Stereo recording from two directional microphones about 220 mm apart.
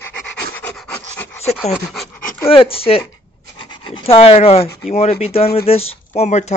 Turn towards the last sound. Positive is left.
turn(degrees=30)  # may be behind; listen again after turning